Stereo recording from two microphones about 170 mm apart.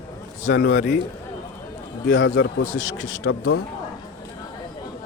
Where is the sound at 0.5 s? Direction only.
90° left.